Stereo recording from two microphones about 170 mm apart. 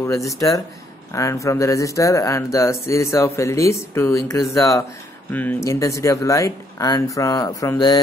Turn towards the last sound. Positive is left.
turn(degrees=20)  # may be behind; listen again after turning